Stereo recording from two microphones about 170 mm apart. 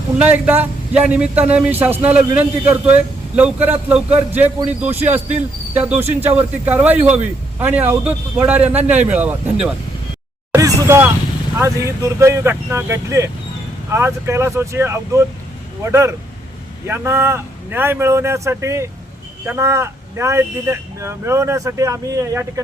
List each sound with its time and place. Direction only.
0.2 s speech: 10° right (ahead or behind)
10.5 s a sound: 20° right (ahead or behind)
11.5 s speech: 15° right (ahead or behind)